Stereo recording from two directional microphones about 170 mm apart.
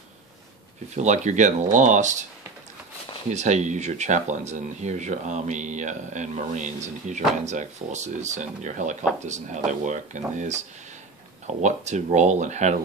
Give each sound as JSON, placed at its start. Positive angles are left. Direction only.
{"t": 0.9, "sound": "speech", "side_deg": -45}
{"t": 3.3, "sound": "speech", "side_deg": -45}